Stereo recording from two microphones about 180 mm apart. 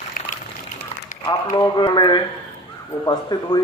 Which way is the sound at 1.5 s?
25° left (ahead or behind).